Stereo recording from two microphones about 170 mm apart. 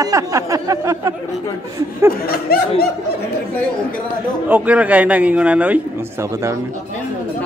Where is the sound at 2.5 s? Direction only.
65° left (ahead or behind).